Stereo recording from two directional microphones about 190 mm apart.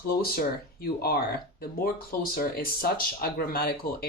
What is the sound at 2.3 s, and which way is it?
Speech, 50° left (ahead or behind).